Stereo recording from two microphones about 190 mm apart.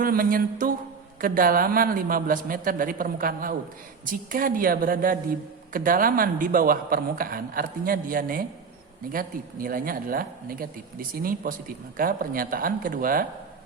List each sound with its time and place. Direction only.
0.0 s a man's voice: 50° right (ahead or behind)